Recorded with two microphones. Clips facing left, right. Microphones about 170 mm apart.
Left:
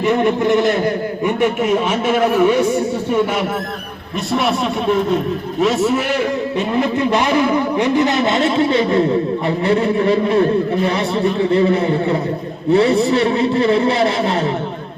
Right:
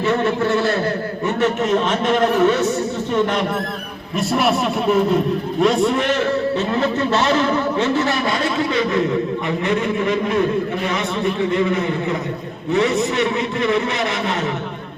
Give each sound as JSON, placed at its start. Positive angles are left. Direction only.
{"t": 0.0, "sound": "a man's voice", "side_deg": 15}
{"t": 4.3, "sound": "a man's voice", "side_deg": 0}
{"t": 6.7, "sound": "a man's voice", "side_deg": 15}